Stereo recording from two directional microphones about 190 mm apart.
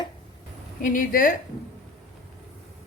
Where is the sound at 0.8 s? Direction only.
45° left (ahead or behind).